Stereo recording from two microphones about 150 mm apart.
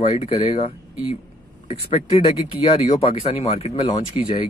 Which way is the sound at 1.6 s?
55° left (ahead or behind).